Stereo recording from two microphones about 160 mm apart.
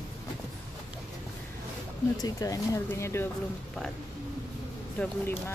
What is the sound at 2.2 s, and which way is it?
Speech, 25° left (ahead or behind).